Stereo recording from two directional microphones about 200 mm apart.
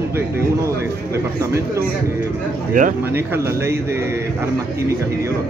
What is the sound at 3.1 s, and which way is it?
Speech, 10° right (ahead or behind).